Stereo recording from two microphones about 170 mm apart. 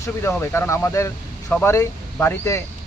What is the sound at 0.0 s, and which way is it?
Speech, 15° left (ahead or behind).